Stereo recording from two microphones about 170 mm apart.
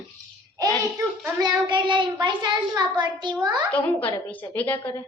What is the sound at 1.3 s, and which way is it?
A child's voice, 25° right (ahead or behind).